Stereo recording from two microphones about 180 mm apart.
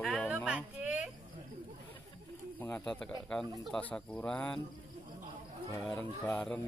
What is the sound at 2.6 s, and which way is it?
Speech, 10° left (ahead or behind).